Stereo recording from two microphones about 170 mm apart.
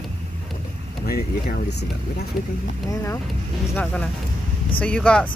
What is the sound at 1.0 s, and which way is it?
Speech, 60° left (ahead or behind).